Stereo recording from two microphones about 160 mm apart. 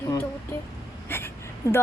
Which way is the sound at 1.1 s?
15° left (ahead or behind).